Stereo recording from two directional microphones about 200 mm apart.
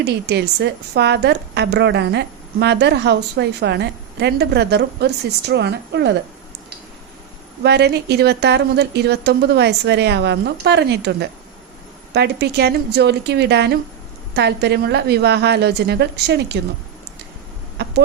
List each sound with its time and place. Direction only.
0.0 s a woman's voice: 55° right (ahead or behind)
7.6 s a woman's voice: 55° right (ahead or behind)